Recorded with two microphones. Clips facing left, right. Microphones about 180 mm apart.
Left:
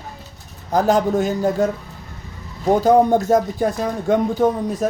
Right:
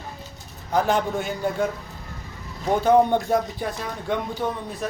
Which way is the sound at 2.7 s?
40° left (ahead or behind).